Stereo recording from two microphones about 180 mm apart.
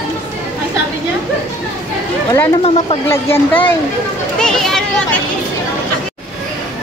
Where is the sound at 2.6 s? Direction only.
35° left (ahead or behind).